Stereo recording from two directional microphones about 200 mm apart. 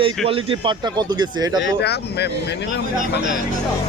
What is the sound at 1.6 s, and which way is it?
Speech, 55° left (ahead or behind).